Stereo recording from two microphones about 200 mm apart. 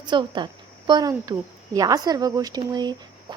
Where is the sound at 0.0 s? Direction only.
20° right (ahead or behind).